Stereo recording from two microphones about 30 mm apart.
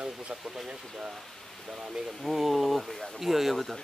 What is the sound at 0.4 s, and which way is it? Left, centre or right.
Speech, centre.